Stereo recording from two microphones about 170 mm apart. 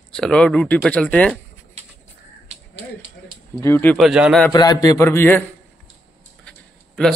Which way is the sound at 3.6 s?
10° left (ahead or behind).